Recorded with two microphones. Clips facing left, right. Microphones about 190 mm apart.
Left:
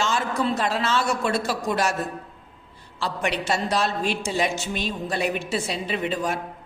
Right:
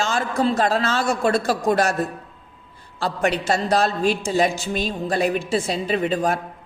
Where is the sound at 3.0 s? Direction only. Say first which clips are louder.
Right 4 dB; 40° right (ahead or behind).